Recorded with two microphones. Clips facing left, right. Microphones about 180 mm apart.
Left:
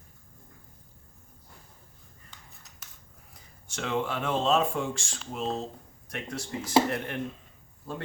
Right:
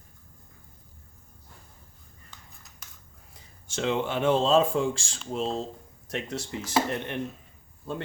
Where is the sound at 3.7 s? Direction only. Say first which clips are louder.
Right 3 dB; 25° right (ahead or behind).